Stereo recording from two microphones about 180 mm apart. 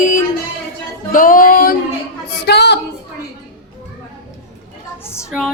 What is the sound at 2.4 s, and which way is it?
Speech, 70° left (ahead or behind).